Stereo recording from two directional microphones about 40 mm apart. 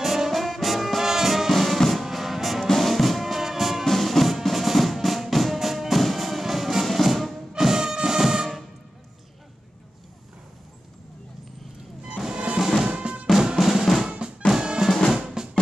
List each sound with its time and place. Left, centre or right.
0.0 s brass instrument: centre
1.0 s music: centre
3.8 s music: centre
7.5 s music: centre
12.5 s music: centre
12.8 s drum: right
13.6 s drum: centre
14.5 s music: centre
15.1 s drum: centre